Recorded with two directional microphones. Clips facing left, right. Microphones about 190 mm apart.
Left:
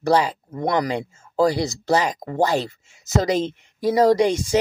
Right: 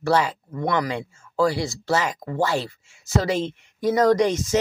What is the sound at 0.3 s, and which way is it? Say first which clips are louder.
Speech: left 1 dB; 20° left (ahead or behind).